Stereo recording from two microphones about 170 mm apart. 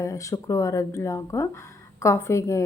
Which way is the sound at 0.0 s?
20° left (ahead or behind).